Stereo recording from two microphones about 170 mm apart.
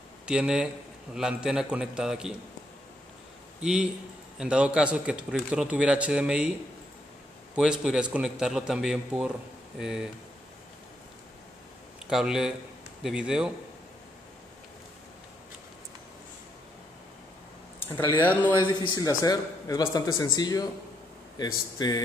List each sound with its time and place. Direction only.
0.3 s a man's voice: 5° right (ahead or behind)
3.6 s a man's voice: 5° right (ahead or behind)
7.5 s a man's voice: 5° right (ahead or behind)
12.1 s a man's voice: 5° right (ahead or behind)
18.5 s a man's voice: 25° left (ahead or behind)